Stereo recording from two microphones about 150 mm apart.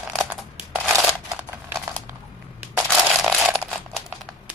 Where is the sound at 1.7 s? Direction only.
15° right (ahead or behind).